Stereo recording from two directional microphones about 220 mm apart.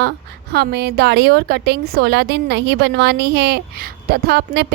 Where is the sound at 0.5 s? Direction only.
45° right (ahead or behind).